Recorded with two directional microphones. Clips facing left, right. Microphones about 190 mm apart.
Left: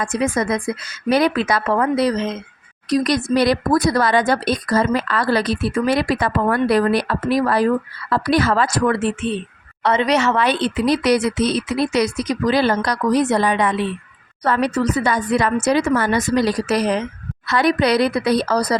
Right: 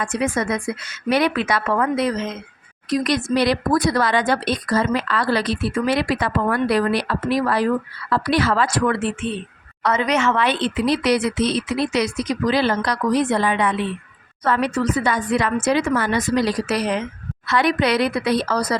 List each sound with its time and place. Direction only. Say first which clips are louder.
0.2 s speech: left 2 dB; 35° left (ahead or behind)
9.8 s speech: left 2 dB; 30° left (ahead or behind)